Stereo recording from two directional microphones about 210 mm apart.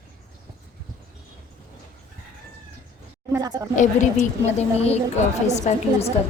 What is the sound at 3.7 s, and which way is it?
A woman's voice, 35° left (ahead or behind).